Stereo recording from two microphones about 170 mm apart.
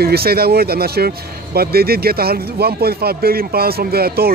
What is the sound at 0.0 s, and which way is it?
Speech, 65° right (ahead or behind).